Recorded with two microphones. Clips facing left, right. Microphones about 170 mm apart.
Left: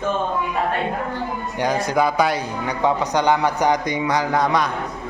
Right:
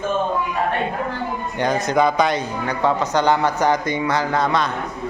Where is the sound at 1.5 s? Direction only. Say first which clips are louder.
Right 1 dB; 10° left (ahead or behind).